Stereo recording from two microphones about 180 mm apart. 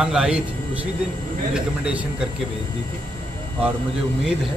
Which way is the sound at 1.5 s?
5° right (ahead or behind).